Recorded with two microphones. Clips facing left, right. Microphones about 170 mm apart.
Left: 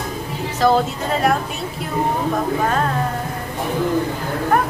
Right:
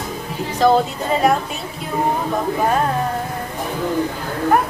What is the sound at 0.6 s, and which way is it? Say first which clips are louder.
Music: right 2 dB; centre (ahead or behind).